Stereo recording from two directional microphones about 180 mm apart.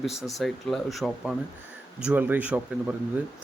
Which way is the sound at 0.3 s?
Centre (ahead or behind).